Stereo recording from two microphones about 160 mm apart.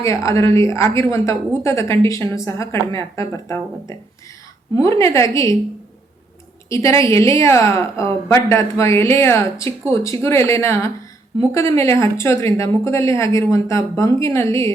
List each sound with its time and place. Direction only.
0.0 s a woman's voice: 20° left (ahead or behind)
6.7 s a woman's voice: 20° left (ahead or behind)